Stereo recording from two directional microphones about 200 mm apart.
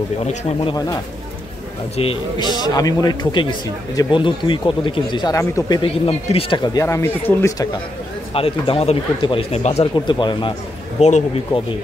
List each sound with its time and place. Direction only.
2.0 s a man's voice: 25° left (ahead or behind)
5.8 s a man's voice: 30° left (ahead or behind); by 7.6 s 15° left (ahead or behind)
8.3 s a man's voice: 30° left (ahead or behind)
9.9 s a man's voice: 25° left (ahead or behind)
11.0 s speech: 35° left (ahead or behind)